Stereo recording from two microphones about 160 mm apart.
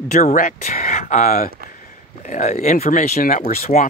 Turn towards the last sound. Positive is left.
turn(degrees=65)  # may be behind; listen again after turning